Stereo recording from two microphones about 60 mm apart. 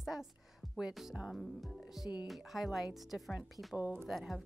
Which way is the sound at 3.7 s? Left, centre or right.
Right.